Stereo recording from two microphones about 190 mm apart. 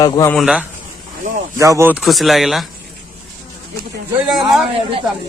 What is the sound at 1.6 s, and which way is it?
Speech, 15° right (ahead or behind).